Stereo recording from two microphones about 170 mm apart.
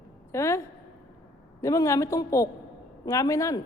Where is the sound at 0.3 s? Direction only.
15° left (ahead or behind).